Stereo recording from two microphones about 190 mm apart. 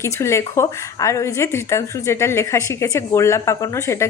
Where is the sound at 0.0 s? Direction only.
15° left (ahead or behind).